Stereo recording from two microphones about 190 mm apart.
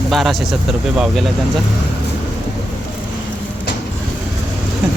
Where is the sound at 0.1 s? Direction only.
Centre (ahead or behind).